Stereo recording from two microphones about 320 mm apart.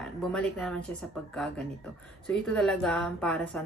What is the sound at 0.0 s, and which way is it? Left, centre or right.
Speech, centre.